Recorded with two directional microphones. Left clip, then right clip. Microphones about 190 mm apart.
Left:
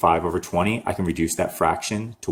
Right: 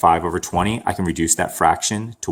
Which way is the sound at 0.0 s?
25° right (ahead or behind).